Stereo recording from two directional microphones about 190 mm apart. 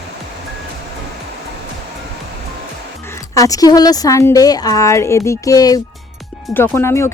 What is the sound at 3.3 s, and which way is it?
A woman's voice, 15° left (ahead or behind).